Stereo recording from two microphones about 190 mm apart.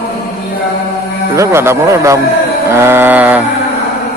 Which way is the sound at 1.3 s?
15° right (ahead or behind).